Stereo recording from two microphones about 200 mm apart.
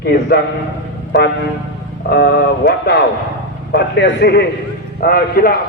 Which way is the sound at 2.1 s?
55° left (ahead or behind).